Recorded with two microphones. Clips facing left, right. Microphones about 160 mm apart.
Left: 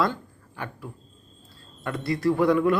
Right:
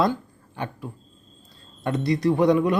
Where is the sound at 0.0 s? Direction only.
20° right (ahead or behind).